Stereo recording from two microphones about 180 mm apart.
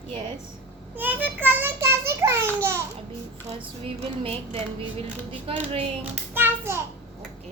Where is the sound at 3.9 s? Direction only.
35° right (ahead or behind).